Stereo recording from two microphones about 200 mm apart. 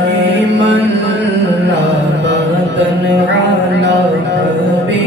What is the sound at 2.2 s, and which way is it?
Music, 60° right (ahead or behind).